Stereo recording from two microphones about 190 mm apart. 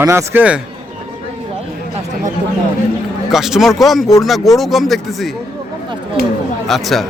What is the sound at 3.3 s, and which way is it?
Speech, centre (ahead or behind).